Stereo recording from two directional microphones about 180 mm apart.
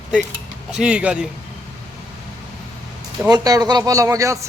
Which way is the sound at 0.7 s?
5° right (ahead or behind).